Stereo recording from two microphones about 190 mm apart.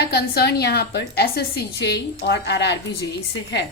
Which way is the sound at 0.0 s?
55° left (ahead or behind).